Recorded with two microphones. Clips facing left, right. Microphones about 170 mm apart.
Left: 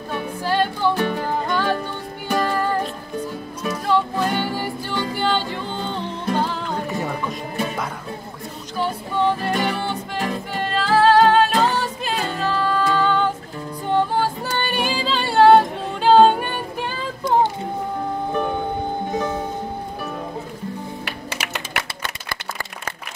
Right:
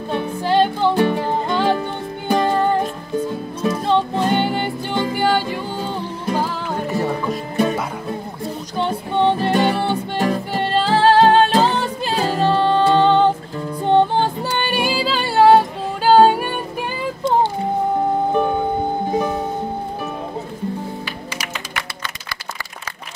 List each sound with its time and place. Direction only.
0.1 s music: 20° right (ahead or behind); by 7.3 s centre (ahead or behind)
8.7 s music: 25° right (ahead or behind); by 16.4 s 5° right (ahead or behind)
19.1 s music: 15° right (ahead or behind)